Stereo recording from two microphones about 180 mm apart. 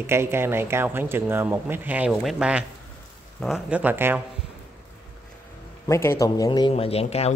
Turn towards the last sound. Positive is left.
turn(degrees=35)  # may be behind; listen again after turning